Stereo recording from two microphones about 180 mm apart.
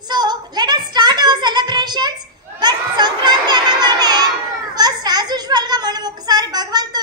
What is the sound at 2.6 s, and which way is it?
Children playing, 25° right (ahead or behind).